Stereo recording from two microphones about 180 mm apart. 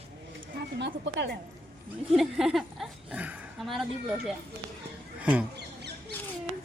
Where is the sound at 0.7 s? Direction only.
75° right (ahead or behind).